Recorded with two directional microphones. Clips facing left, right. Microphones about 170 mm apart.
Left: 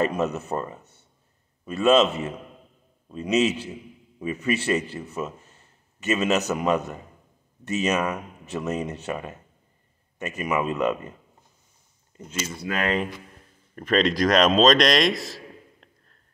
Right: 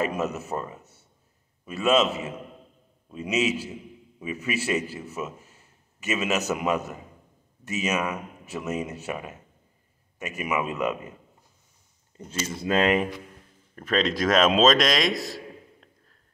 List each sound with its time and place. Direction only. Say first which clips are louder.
0.0 s a man's voice: left 3 dB; 5° right (ahead or behind)
12.3 s speech: right 3 dB; 30° right (ahead or behind)
13.7 s a man's voice: left 3 dB; centre (ahead or behind)